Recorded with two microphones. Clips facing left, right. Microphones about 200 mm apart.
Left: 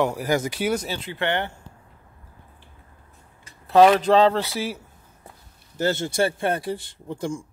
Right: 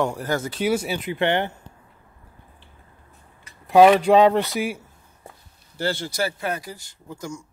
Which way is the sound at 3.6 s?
10° right (ahead or behind).